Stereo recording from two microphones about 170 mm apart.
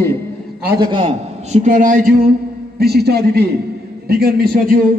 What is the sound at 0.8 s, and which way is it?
A man's voice, 30° right (ahead or behind).